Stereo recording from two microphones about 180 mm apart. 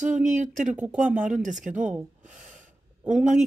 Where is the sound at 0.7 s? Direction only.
5° right (ahead or behind).